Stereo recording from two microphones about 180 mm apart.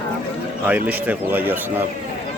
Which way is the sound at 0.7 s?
10° right (ahead or behind).